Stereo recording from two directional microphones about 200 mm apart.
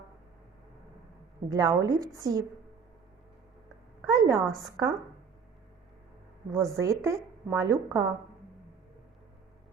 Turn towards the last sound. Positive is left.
turn(degrees=-15)  # may be behind; listen again after turning